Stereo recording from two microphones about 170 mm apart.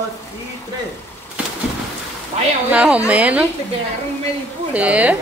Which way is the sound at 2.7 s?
10° right (ahead or behind).